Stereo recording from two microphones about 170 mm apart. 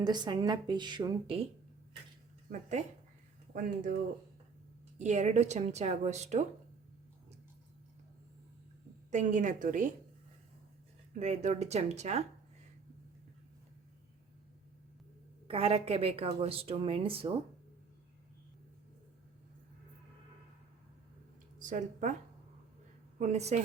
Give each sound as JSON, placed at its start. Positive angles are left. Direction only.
{"t": 0.0, "sound": "speech", "side_deg": -25}
{"t": 2.5, "sound": "a woman's voice", "side_deg": -45}
{"t": 4.9, "sound": "a woman's voice", "side_deg": -45}
{"t": 9.0, "sound": "a woman's voice", "side_deg": -45}
{"t": 11.1, "sound": "a woman's voice", "side_deg": -45}
{"t": 15.4, "sound": "a woman's voice", "side_deg": -35}
{"t": 21.6, "sound": "speech", "side_deg": -50}
{"t": 23.1, "sound": "a woman's voice", "side_deg": -45}